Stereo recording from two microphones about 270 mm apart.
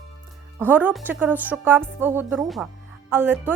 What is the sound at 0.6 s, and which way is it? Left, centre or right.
A woman's voice, centre.